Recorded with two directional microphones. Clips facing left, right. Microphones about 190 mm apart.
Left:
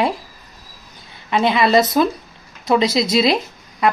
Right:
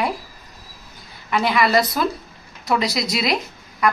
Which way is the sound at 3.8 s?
25° left (ahead or behind).